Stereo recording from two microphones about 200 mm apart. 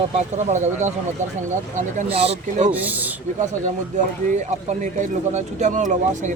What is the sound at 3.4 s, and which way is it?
Speech, 40° right (ahead or behind).